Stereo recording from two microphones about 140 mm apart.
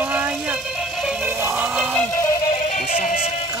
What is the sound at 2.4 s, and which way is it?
Music, 65° left (ahead or behind).